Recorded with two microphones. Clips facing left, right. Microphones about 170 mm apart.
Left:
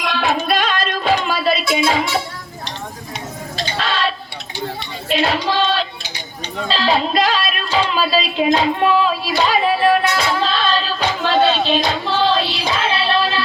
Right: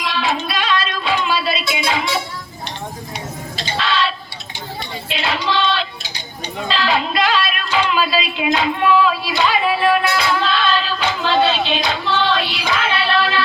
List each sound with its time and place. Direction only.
0.0 s music: 55° left (ahead or behind)
3.8 s chicken: 45° left (ahead or behind)
5.0 s a sound: 45° left (ahead or behind)
6.7 s speech: 35° left (ahead or behind)